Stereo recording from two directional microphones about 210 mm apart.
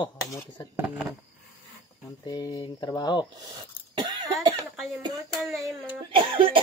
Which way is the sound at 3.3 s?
20° right (ahead or behind).